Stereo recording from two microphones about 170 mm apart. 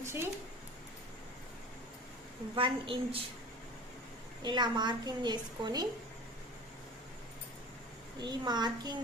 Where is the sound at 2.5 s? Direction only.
30° right (ahead or behind).